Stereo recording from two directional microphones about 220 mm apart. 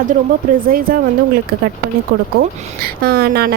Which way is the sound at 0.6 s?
40° right (ahead or behind).